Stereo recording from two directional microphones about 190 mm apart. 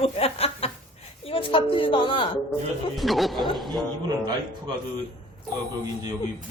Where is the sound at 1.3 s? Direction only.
30° left (ahead or behind).